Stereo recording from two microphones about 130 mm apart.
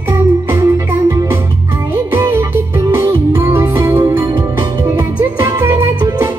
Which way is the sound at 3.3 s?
25° right (ahead or behind).